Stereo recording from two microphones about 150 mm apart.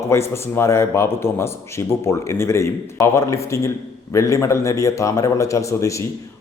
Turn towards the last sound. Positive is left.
turn(degrees=20)  # may be behind; listen again after turning